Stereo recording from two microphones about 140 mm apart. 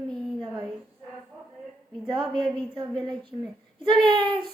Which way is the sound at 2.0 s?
35° right (ahead or behind).